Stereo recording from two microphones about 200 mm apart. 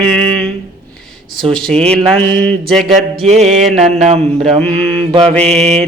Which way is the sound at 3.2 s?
35° right (ahead or behind).